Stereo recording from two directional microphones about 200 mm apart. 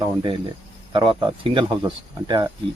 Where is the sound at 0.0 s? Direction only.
25° right (ahead or behind).